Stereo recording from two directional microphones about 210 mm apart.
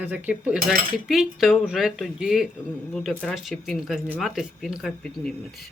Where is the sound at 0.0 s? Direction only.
5° right (ahead or behind).